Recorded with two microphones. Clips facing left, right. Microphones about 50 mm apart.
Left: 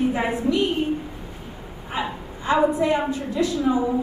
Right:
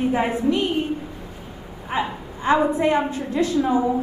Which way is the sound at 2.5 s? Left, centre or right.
Right.